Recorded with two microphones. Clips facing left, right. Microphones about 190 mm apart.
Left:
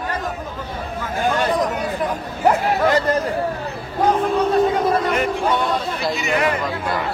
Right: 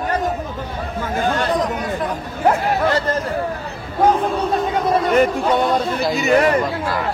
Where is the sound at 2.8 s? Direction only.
15° left (ahead or behind).